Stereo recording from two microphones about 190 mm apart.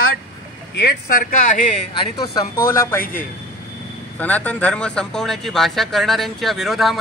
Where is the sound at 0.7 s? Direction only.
60° left (ahead or behind).